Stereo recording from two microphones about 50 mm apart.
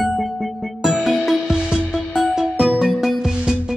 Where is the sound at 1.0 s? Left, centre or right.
Centre.